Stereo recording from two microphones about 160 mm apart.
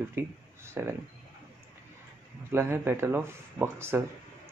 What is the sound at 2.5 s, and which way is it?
Speech, 15° right (ahead or behind).